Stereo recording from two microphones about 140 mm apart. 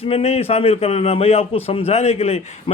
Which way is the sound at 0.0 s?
45° left (ahead or behind).